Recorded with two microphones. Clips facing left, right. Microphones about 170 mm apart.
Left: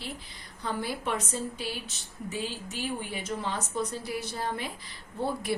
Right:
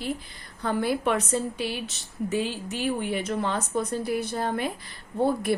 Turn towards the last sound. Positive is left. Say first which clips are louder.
# right 6 dB
turn(degrees=-55)  # may be behind; listen again after turning